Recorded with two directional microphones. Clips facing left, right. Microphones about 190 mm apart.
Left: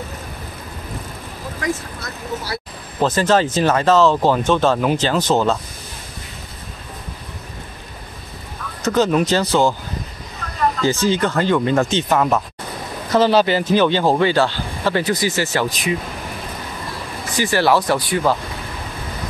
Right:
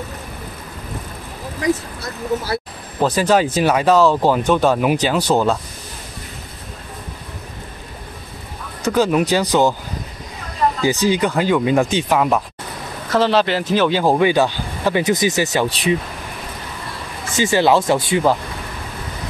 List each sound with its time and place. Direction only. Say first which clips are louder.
3.0 s speech: right 1 dB; 10° right (ahead or behind)
8.8 s speech: even; 10° right (ahead or behind)
10.8 s speech: right 1 dB; 15° right (ahead or behind)
13.1 s speech: left 2 dB; centre (ahead or behind); by 15.6 s 20° right (ahead or behind)
15.7 s speech: right 4 dB; 30° right (ahead or behind)
17.4 s speech: right 2 dB; 20° right (ahead or behind)